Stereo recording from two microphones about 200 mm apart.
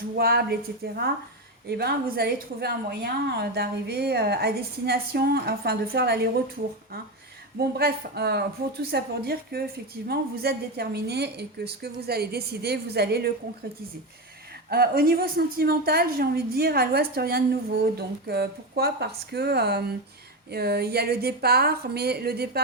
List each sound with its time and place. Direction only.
0.2 s a woman's voice: 50° right (ahead or behind)
1.6 s a woman's voice: 55° right (ahead or behind)
7.6 s a woman's voice: 50° right (ahead or behind)
14.7 s a woman's voice: 50° right (ahead or behind)